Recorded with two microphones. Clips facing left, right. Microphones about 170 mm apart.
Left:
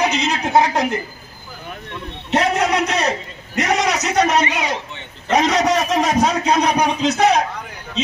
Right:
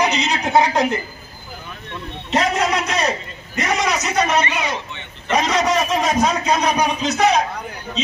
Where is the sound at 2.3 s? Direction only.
65° left (ahead or behind).